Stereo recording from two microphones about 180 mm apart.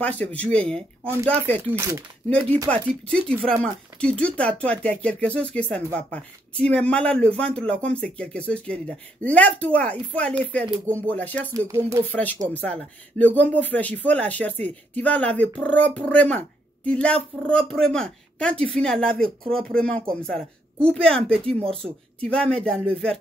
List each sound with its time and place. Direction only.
0.0 s speech: 10° left (ahead or behind)
1.7 s speech: 15° right (ahead or behind)
2.2 s speech: 5° left (ahead or behind)
11.5 s speech: 15° right (ahead or behind)
12.1 s speech: 10° left (ahead or behind)